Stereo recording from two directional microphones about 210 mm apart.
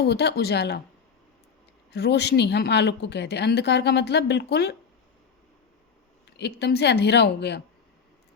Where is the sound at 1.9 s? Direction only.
50° left (ahead or behind).